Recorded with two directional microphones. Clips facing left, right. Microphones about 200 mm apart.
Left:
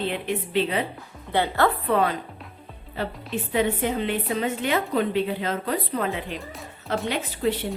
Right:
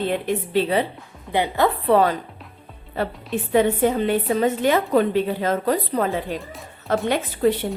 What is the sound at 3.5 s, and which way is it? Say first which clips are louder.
A woman's voice: right 6 dB; 45° right (ahead or behind).